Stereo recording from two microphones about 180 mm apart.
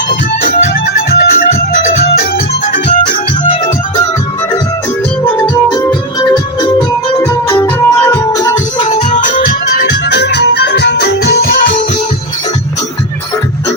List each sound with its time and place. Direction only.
0.1 s music: 50° left (ahead or behind)
2.7 s music: 45° left (ahead or behind)
6.1 s music: 25° left (ahead or behind)
8.8 s music: 40° left (ahead or behind); by 11.7 s 60° left (ahead or behind)